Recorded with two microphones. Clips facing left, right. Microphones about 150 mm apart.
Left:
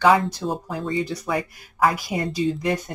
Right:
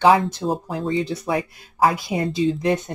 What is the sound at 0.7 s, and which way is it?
Speech, 25° right (ahead or behind).